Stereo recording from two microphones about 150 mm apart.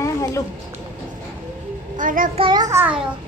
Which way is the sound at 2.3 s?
35° right (ahead or behind).